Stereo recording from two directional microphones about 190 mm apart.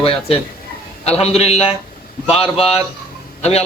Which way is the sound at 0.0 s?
30° left (ahead or behind).